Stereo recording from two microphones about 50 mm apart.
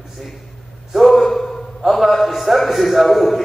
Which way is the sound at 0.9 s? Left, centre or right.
Centre.